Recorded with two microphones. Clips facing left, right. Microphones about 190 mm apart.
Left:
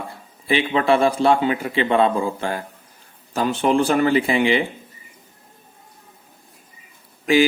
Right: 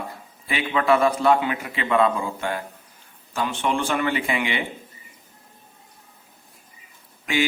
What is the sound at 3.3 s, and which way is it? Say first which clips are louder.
Mantra: left 6 dB; 35° left (ahead or behind).